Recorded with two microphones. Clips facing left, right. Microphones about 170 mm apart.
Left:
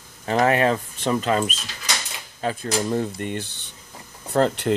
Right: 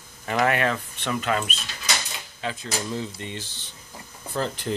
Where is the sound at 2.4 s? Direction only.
45° left (ahead or behind).